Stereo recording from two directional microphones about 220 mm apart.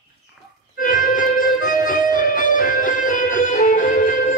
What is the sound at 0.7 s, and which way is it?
Music, 40° left (ahead or behind).